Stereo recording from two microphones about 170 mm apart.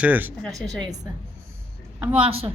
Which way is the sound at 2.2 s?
35° right (ahead or behind).